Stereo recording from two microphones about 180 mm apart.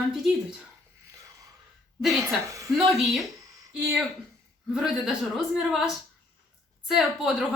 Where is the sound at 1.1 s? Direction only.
15° right (ahead or behind).